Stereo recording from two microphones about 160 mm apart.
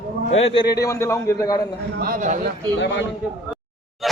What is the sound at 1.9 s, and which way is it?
Speech, 65° right (ahead or behind).